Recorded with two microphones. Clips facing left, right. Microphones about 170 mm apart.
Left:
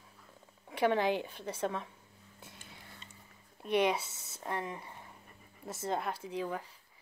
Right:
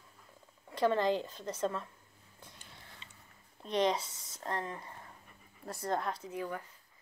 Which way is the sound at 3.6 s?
10° left (ahead or behind).